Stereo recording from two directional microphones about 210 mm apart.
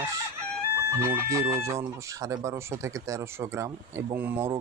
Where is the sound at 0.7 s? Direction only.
10° right (ahead or behind).